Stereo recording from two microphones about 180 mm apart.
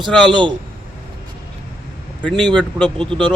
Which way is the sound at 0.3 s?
25° right (ahead or behind).